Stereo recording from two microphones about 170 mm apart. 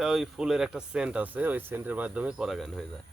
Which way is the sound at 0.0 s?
5° right (ahead or behind).